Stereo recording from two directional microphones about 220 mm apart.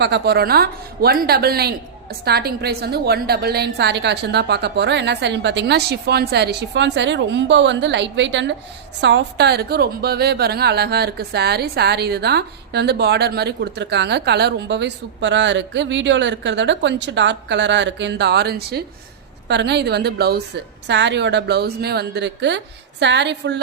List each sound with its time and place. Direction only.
0.0 s a woman's voice: 50° right (ahead or behind)